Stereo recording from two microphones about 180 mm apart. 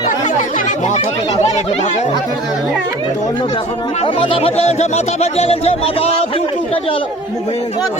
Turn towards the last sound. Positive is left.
turn(degrees=20)  # may be behind; listen again after turning